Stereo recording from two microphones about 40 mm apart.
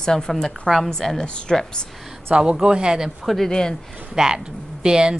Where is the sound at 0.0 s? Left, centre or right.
Centre.